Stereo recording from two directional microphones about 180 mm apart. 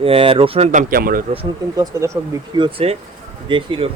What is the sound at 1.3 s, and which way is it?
Speech, 25° right (ahead or behind).